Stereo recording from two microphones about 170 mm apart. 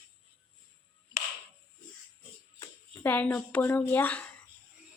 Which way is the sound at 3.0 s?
10° left (ahead or behind).